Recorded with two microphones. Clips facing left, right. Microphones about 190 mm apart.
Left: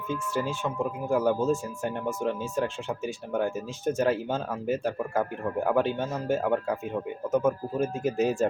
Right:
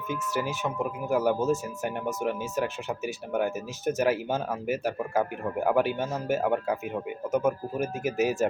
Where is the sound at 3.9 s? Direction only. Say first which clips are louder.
Even; 5° right (ahead or behind).